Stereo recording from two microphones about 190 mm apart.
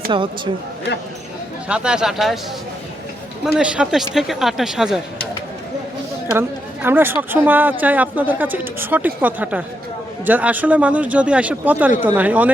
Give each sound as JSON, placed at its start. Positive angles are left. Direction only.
{"t": 0.1, "sound": "speech", "side_deg": -25}
{"t": 1.6, "sound": "speech", "side_deg": -5}
{"t": 3.6, "sound": "speech", "side_deg": -5}
{"t": 6.8, "sound": "speech", "side_deg": -10}